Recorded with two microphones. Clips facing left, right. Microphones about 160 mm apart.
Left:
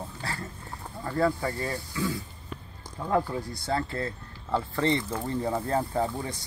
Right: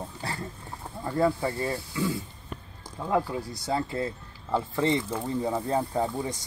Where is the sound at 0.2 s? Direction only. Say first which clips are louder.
Right 1 dB; 20° right (ahead or behind).